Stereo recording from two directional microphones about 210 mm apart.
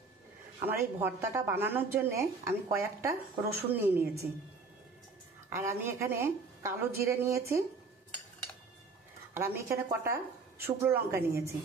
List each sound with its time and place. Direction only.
0.6 s a woman's voice: 10° right (ahead or behind)
5.5 s a woman's voice: 15° right (ahead or behind)
9.3 s a woman's voice: 10° right (ahead or behind)